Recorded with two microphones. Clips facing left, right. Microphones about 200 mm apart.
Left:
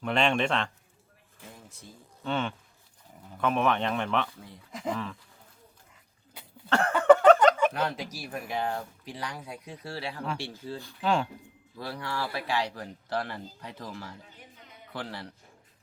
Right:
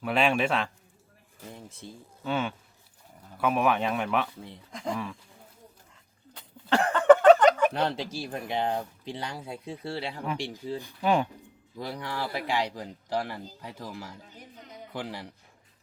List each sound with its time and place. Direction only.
0.0 s a man's voice: 5° right (ahead or behind)
2.2 s speech: 5° right (ahead or behind)
4.7 s speech: 5° left (ahead or behind)
6.7 s a sound: 15° right (ahead or behind)
7.7 s speech: 30° right (ahead or behind); by 15.3 s 15° right (ahead or behind)